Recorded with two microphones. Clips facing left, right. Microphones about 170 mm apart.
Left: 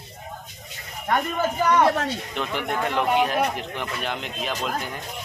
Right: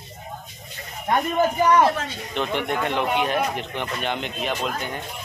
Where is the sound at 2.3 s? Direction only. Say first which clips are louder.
Right 7 dB; centre (ahead or behind).